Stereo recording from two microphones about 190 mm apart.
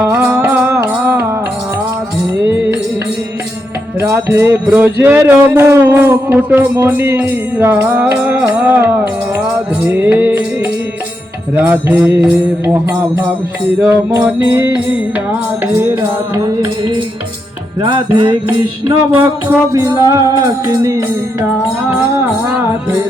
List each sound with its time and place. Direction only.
0.0 s music: 15° right (ahead or behind)
4.0 s music: 15° right (ahead or behind)
19.1 s music: 10° right (ahead or behind)